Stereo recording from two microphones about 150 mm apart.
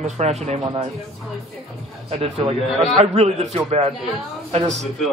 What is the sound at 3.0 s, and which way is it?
Speech, 45° right (ahead or behind).